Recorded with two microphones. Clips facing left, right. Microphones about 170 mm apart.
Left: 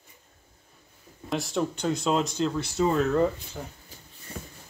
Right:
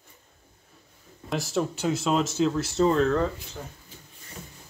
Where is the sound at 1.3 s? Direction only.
Centre (ahead or behind).